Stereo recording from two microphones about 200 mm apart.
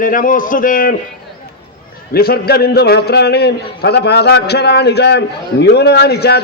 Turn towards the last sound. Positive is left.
turn(degrees=55)  # may be behind; listen again after turning